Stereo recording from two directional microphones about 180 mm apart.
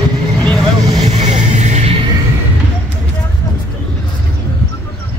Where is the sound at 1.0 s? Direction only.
40° right (ahead or behind).